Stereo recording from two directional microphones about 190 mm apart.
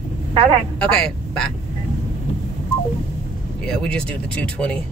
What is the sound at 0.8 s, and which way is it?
Speech, 5° left (ahead or behind).